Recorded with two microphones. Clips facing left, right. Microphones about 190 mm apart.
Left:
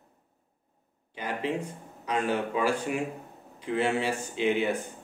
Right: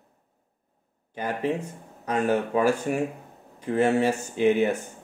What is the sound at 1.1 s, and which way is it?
Speech, 45° right (ahead or behind).